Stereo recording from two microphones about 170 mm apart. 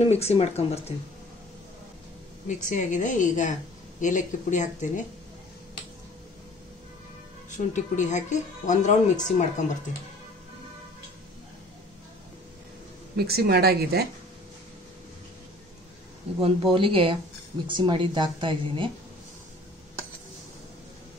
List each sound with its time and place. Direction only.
0.0 s speech: 40° left (ahead or behind)
2.4 s speech: 45° left (ahead or behind)
7.5 s speech: 45° left (ahead or behind)
13.1 s speech: 65° right (ahead or behind)
16.3 s speech: 30° right (ahead or behind)